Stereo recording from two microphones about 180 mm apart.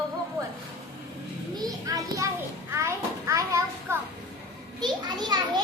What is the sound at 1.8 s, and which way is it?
A child's voice, 20° right (ahead or behind).